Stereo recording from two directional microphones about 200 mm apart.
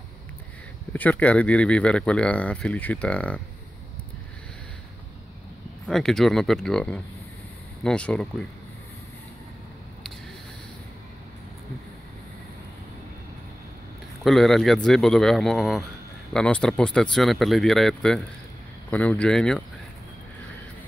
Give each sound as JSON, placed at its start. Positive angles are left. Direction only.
{"t": 0.9, "sound": "speech", "side_deg": 10}
{"t": 5.9, "sound": "speech", "side_deg": 0}
{"t": 14.2, "sound": "speech", "side_deg": 0}